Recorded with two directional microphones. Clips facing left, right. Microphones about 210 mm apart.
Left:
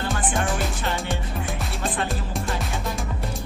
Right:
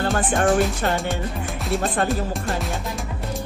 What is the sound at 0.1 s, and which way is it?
Speech, 50° right (ahead or behind).